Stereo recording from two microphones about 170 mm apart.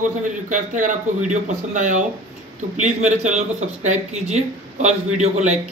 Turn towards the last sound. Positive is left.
turn(degrees=-40)  # may be behind; listen again after turning